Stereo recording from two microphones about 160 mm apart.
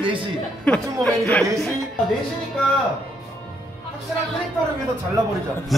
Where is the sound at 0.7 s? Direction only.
5° left (ahead or behind).